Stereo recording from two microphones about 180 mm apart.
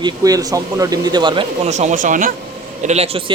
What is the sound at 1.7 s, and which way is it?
A man's voice, 40° right (ahead or behind).